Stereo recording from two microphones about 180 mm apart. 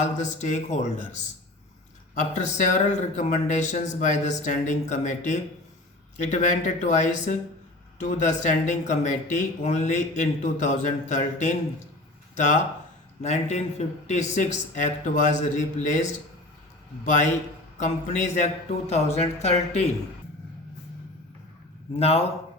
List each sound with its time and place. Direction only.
0.0 s speech: 40° left (ahead or behind)
2.1 s speech: 40° left (ahead or behind)
13.2 s speech: 40° left (ahead or behind)
17.8 s speech: 40° left (ahead or behind)
21.9 s speech: 35° left (ahead or behind)